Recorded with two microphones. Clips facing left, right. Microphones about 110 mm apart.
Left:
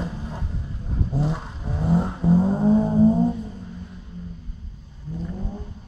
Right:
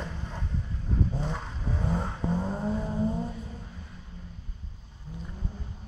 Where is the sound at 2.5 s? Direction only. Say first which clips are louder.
Left 12 dB; 25° left (ahead or behind).